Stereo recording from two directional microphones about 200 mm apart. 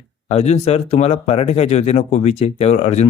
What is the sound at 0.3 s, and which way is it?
Speech, 35° left (ahead or behind).